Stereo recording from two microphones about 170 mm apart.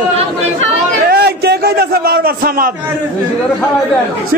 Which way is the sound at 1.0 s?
70° right (ahead or behind).